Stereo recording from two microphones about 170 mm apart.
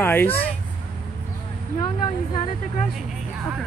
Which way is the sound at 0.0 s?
10° left (ahead or behind).